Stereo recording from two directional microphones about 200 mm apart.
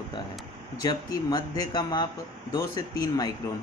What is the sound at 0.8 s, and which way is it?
Speech, 20° left (ahead or behind).